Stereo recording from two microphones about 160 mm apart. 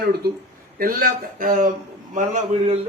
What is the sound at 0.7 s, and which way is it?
Speech, 60° right (ahead or behind).